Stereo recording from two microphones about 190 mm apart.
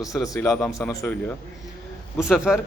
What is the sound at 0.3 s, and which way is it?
Speech, 10° left (ahead or behind).